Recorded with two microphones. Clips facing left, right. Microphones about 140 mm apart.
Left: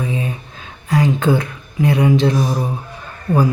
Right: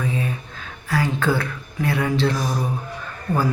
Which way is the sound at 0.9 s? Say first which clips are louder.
Left 6 dB; 20° left (ahead or behind).